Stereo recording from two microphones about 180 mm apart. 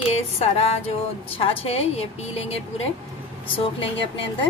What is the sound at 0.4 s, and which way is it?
Speech, 35° left (ahead or behind).